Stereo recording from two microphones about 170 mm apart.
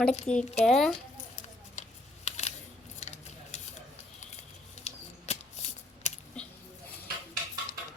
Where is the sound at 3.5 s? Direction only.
45° left (ahead or behind).